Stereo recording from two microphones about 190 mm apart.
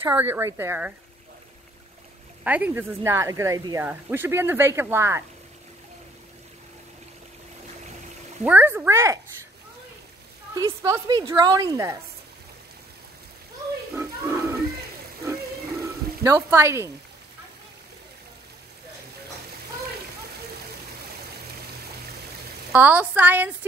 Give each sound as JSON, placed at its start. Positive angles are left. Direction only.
{"t": 0.0, "sound": "speech", "side_deg": -10}
{"t": 2.4, "sound": "speech", "side_deg": -10}
{"t": 8.5, "sound": "speech", "side_deg": -10}
{"t": 10.5, "sound": "a woman's voice", "side_deg": -15}
{"t": 13.9, "sound": "a sound", "side_deg": -15}
{"t": 16.3, "sound": "speech", "side_deg": -15}
{"t": 22.7, "sound": "speech", "side_deg": -10}